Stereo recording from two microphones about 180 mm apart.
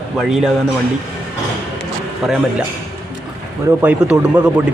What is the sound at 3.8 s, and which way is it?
Speech, 10° right (ahead or behind).